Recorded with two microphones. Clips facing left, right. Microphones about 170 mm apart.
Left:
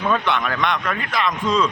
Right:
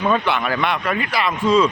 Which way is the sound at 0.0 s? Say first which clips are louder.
Right 2 dB; 5° right (ahead or behind).